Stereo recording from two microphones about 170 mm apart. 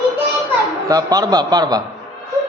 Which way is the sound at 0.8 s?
20° right (ahead or behind).